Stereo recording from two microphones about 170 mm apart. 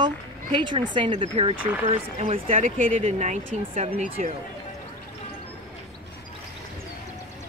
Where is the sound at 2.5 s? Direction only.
50° right (ahead or behind).